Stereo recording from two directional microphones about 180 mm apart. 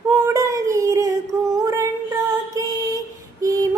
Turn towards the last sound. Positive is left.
turn(degrees=-20)  # may be behind; listen again after turning